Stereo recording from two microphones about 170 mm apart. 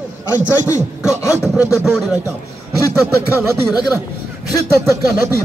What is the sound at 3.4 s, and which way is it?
Speech, 15° right (ahead or behind).